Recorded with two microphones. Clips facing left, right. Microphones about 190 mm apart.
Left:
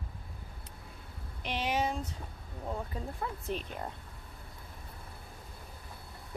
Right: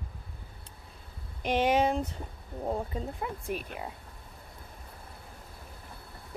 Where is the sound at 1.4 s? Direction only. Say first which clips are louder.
Right 7 dB; 50° right (ahead or behind).